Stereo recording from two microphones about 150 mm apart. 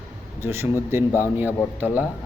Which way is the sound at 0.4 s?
15° right (ahead or behind).